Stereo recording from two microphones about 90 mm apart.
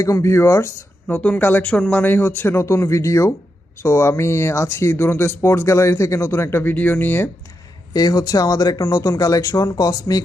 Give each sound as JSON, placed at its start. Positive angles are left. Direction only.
{"t": 0.0, "sound": "speech", "side_deg": 35}
{"t": 1.0, "sound": "speech", "side_deg": 15}
{"t": 7.9, "sound": "speech", "side_deg": 45}